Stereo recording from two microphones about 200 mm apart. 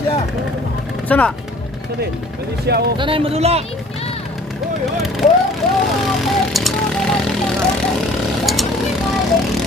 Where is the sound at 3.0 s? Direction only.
25° right (ahead or behind).